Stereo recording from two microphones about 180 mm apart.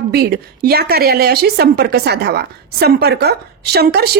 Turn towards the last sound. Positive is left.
turn(degrees=-60)  # may be behind; listen again after turning